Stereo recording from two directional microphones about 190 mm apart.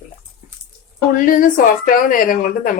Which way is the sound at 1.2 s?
45° left (ahead or behind).